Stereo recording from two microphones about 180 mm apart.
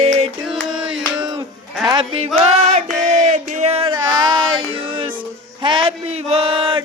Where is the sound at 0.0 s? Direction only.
35° right (ahead or behind).